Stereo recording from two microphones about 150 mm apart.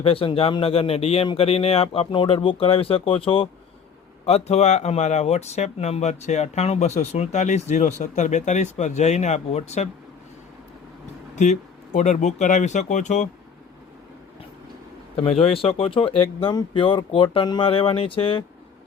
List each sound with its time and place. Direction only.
0.0 s speech: 40° left (ahead or behind)
11.3 s speech: 55° left (ahead or behind)
15.1 s speech: 40° left (ahead or behind)